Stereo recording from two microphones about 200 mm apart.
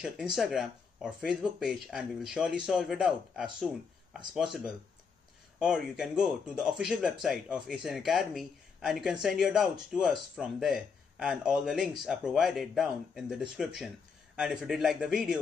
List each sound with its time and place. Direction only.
0.4 s speech: centre (ahead or behind)